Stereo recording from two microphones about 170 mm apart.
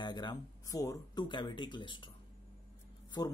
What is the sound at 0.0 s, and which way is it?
Speech, 25° left (ahead or behind).